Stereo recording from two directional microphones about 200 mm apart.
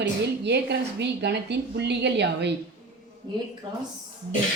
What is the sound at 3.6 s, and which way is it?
Speech, 20° right (ahead or behind).